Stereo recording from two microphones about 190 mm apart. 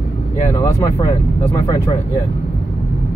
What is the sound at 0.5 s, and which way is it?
Speech, 20° left (ahead or behind).